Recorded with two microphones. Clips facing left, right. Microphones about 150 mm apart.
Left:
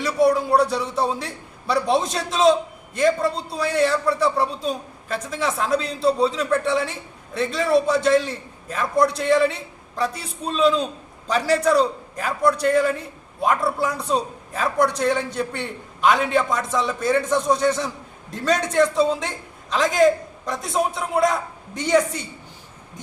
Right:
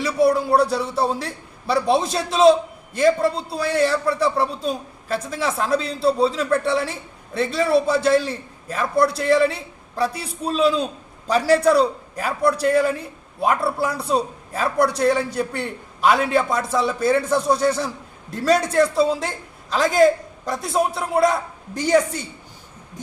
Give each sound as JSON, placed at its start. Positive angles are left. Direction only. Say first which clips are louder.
{"t": 0.0, "sound": "a man's voice", "louder": "even", "side_deg": -5}